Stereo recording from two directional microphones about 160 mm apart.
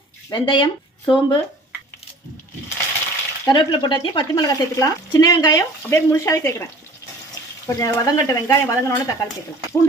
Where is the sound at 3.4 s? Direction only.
25° left (ahead or behind).